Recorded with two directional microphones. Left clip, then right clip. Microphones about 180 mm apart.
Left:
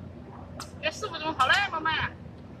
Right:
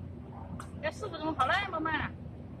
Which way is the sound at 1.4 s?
35° right (ahead or behind).